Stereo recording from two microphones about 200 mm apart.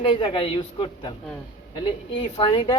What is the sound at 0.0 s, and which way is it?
Speech, 25° left (ahead or behind).